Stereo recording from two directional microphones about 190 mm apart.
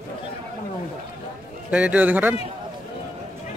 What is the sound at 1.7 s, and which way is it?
Speech, 5° right (ahead or behind).